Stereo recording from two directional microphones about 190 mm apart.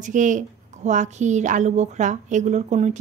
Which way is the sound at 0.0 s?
40° right (ahead or behind).